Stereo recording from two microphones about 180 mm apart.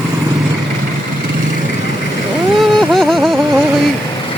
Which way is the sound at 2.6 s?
Centre (ahead or behind).